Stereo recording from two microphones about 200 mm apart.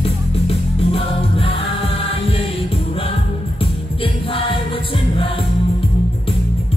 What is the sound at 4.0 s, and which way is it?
Music, 25° left (ahead or behind).